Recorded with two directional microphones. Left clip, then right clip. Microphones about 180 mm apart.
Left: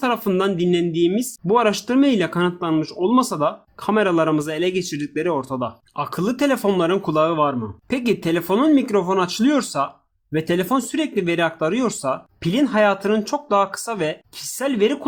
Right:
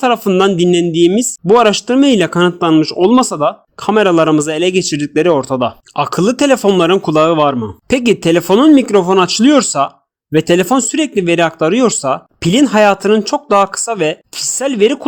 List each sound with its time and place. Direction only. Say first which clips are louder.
0.0 s speech: right 9 dB; 40° right (ahead or behind)